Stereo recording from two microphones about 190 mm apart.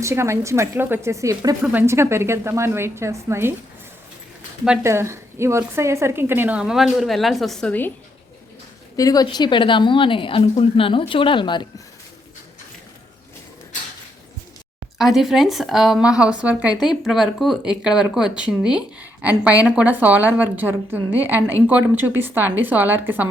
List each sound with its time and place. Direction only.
0.0 s a woman's voice: 15° right (ahead or behind)
4.6 s a woman's voice: 10° right (ahead or behind); by 7.9 s 10° left (ahead or behind)
9.0 s speech: 20° left (ahead or behind)
14.9 s a woman's voice: centre (ahead or behind)